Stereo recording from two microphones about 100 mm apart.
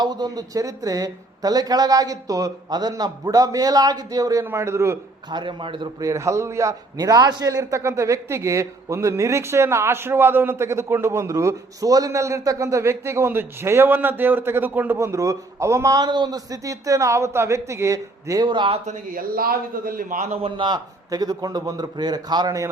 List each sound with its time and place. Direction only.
0.0 s a man's voice: 45° right (ahead or behind); by 4.9 s 25° right (ahead or behind)
5.3 s a man's voice: 55° right (ahead or behind)
6.0 s a man's voice: 30° right (ahead or behind)
18.4 s a man's voice: 50° right (ahead or behind)
20.2 s a man's voice: 90° right
20.6 s speech: 45° right (ahead or behind)